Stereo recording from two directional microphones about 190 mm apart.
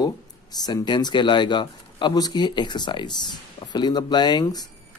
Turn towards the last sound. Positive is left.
turn(degrees=20)  # may be behind; listen again after turning